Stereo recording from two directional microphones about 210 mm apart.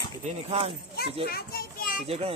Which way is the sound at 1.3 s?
45° left (ahead or behind).